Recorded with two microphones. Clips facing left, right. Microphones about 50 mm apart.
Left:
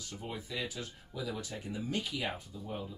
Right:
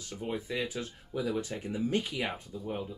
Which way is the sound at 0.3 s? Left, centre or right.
Right.